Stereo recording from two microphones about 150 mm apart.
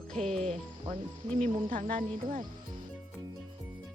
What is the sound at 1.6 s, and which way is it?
Speech, 65° right (ahead or behind).